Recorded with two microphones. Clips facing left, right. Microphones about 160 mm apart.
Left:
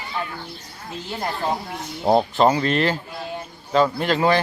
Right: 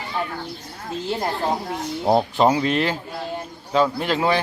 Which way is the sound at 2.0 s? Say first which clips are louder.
Left 1 dB; centre (ahead or behind).